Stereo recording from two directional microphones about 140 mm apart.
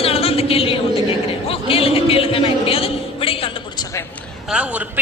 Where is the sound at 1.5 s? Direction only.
40° left (ahead or behind).